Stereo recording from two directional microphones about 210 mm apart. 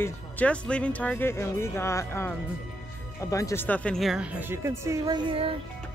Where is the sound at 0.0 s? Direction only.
5° left (ahead or behind); by 5.6 s 25° right (ahead or behind).